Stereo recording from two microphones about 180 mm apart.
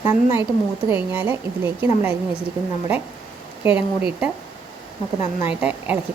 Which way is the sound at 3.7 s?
5° right (ahead or behind).